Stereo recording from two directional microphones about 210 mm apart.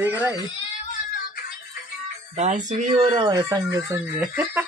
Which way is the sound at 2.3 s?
35° right (ahead or behind).